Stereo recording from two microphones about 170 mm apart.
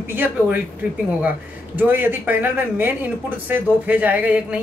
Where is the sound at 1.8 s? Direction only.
10° right (ahead or behind).